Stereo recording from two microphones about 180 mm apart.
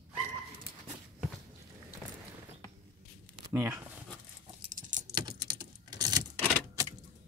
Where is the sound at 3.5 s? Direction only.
10° right (ahead or behind).